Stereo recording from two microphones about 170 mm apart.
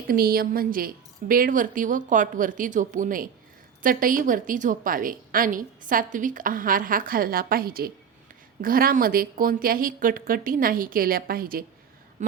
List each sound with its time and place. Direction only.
0.1 s a woman's voice: 60° right (ahead or behind)